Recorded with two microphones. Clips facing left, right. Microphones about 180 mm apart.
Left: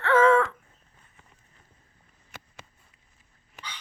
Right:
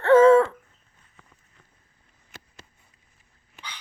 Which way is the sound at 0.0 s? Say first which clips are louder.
Right 6 dB; 40° right (ahead or behind).